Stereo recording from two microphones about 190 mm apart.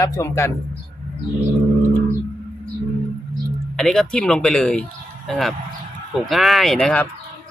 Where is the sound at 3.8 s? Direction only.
Centre (ahead or behind).